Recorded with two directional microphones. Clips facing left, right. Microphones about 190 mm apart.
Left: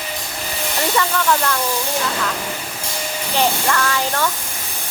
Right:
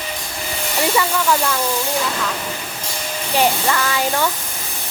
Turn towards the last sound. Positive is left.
turn(degrees=-10)  # may be behind; listen again after turning